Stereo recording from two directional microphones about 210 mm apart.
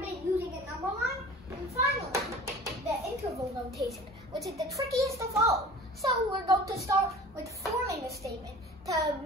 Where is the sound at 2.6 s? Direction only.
15° right (ahead or behind).